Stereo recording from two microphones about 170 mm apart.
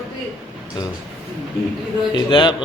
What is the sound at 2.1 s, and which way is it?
Speech, 25° left (ahead or behind).